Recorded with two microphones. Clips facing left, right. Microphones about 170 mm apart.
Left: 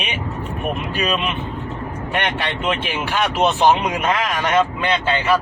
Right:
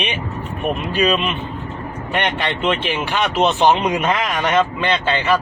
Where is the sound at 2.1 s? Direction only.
5° left (ahead or behind).